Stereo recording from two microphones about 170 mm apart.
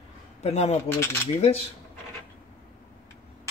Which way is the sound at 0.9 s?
15° left (ahead or behind).